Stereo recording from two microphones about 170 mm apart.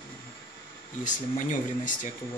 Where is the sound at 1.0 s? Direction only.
50° left (ahead or behind).